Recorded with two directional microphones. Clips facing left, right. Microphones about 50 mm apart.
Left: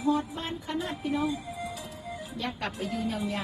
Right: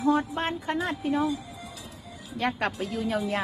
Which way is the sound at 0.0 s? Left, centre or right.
Right.